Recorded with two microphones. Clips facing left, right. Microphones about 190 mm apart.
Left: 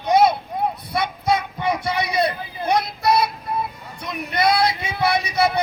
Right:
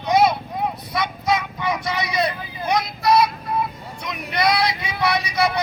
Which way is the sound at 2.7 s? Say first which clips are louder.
Right 2 dB; 55° left (ahead or behind).